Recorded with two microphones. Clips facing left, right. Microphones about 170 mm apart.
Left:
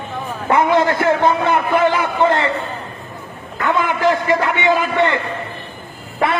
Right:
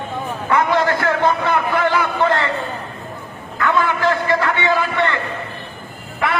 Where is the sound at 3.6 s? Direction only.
15° left (ahead or behind).